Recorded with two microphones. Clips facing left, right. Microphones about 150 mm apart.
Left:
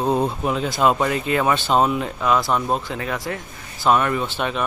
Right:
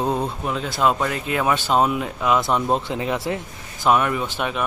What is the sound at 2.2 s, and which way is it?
Speech, 20° right (ahead or behind).